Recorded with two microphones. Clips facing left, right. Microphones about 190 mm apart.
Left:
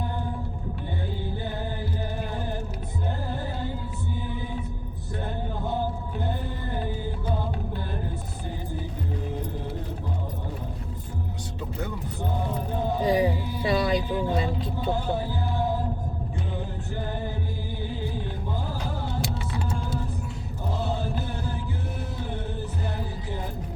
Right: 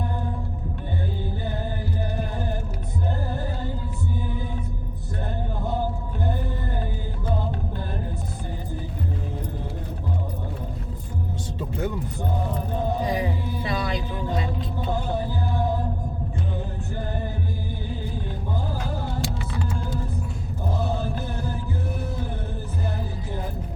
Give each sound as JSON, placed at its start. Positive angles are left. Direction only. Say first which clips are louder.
{"t": 13.1, "sound": "music", "louder": "left 3 dB", "side_deg": 30}